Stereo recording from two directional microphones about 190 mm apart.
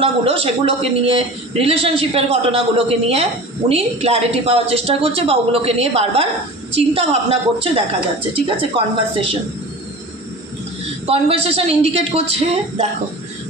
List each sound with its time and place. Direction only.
0.0 s a man's voice: 30° right (ahead or behind)
11.1 s a man's voice: 30° right (ahead or behind)